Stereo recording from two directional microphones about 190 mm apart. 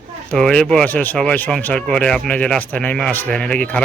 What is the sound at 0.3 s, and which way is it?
Speech, 5° left (ahead or behind).